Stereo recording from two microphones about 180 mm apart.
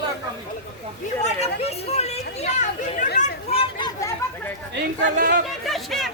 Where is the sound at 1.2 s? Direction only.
35° left (ahead or behind).